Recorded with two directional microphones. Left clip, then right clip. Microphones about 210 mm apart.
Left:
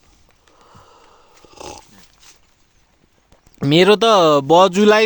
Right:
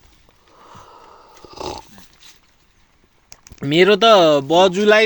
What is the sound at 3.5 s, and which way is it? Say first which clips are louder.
Speech: left 1 dB; 30° left (ahead or behind).